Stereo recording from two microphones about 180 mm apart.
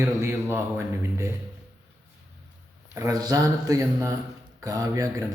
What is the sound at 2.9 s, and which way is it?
A man's voice, 20° right (ahead or behind).